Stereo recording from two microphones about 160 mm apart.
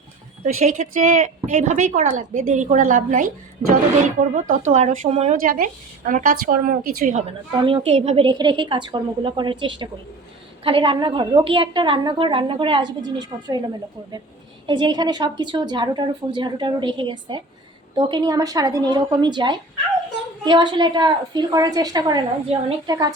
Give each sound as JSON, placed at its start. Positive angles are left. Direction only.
{"t": 0.4, "sound": "a woman's voice", "side_deg": -50}
{"t": 5.4, "sound": "a woman's voice", "side_deg": -60}
{"t": 7.6, "sound": "a woman's voice", "side_deg": -35}
{"t": 14.7, "sound": "a woman's voice", "side_deg": -30}
{"t": 22.5, "sound": "a woman's voice", "side_deg": -40}
{"t": 22.9, "sound": "a woman's voice", "side_deg": -25}